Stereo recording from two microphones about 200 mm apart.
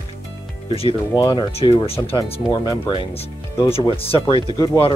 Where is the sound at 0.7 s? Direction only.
30° left (ahead or behind).